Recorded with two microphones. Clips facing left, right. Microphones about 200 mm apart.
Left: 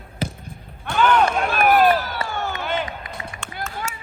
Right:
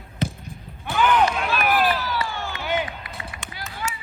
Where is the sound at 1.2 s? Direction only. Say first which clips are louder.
Left 3 dB; 50° left (ahead or behind).